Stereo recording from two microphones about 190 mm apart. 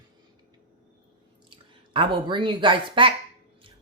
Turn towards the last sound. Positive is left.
turn(degrees=-25)  # may be behind; listen again after turning